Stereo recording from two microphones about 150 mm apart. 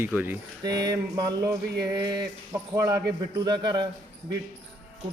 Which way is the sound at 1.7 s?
90° right.